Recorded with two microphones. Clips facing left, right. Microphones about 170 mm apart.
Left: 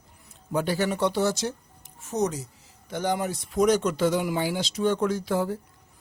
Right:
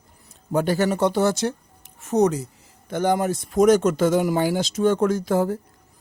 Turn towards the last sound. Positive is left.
turn(degrees=-45)  # may be behind; listen again after turning